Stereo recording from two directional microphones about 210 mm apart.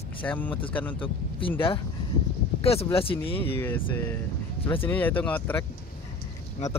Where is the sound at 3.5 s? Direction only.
10° left (ahead or behind).